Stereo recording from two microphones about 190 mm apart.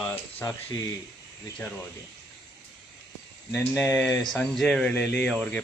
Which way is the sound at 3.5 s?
10° left (ahead or behind).